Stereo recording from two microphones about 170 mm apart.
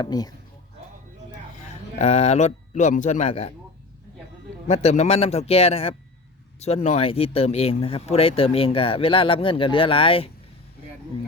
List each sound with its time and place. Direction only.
0.0 s speech: 25° left (ahead or behind)
2.0 s speech: 40° left (ahead or behind)
4.7 s speech: 40° left (ahead or behind)